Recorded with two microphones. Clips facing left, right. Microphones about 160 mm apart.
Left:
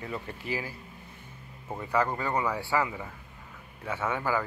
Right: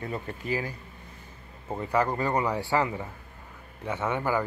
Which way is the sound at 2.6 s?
40° right (ahead or behind).